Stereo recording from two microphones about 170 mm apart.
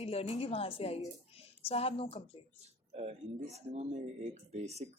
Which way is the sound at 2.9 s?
40° right (ahead or behind).